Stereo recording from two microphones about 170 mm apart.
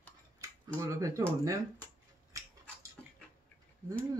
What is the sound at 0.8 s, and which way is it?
Speech, 20° right (ahead or behind).